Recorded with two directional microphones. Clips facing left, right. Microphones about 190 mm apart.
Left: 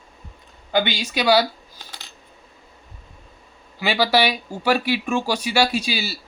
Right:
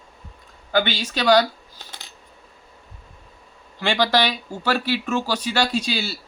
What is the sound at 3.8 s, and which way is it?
Speech, 5° left (ahead or behind).